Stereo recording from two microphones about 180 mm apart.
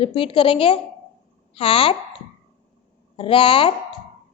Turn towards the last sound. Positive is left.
turn(degrees=30)  # may be behind; listen again after turning